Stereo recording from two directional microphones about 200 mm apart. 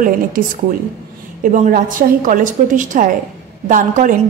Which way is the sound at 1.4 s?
40° right (ahead or behind).